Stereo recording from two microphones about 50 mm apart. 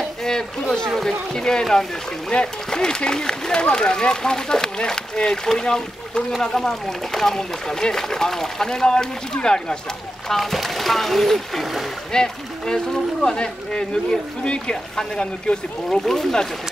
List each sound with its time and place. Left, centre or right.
0.2 s speech: centre
10.3 s speech: centre
12.1 s speech: centre
15.9 s speech: centre